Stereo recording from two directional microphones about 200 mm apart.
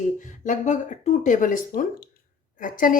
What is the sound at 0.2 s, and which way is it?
A woman's voice, 40° left (ahead or behind).